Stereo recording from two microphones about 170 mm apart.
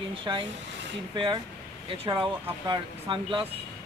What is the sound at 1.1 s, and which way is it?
Speech, 30° right (ahead or behind).